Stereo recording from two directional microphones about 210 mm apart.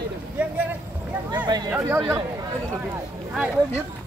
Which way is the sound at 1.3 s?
20° right (ahead or behind).